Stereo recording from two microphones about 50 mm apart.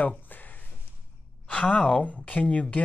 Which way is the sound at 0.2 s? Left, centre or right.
Left.